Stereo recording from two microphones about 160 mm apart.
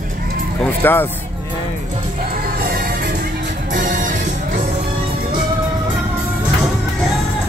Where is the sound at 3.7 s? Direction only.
60° right (ahead or behind).